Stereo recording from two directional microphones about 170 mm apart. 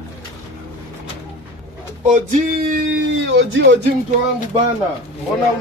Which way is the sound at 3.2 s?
90° right.